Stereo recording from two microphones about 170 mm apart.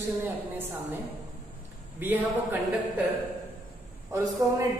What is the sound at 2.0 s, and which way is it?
Speech, 10° right (ahead or behind).